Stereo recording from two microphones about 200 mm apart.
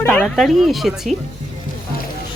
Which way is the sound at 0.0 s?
10° left (ahead or behind).